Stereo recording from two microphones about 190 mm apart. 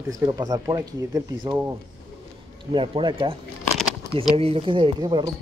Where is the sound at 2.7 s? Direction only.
25° right (ahead or behind).